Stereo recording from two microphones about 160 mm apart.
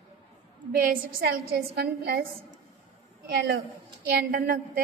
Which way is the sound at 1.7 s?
80° right.